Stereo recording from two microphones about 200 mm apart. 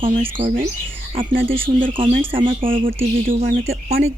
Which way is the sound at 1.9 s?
25° right (ahead or behind).